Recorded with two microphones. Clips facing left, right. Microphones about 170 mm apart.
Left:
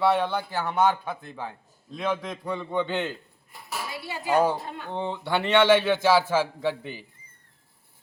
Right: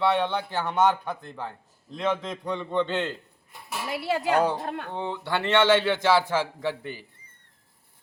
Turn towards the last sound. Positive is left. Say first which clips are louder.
# left 2 dB
turn(degrees=15)  # may be behind; listen again after turning